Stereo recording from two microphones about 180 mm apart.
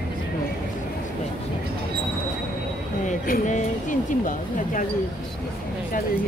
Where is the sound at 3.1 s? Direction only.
50° left (ahead or behind).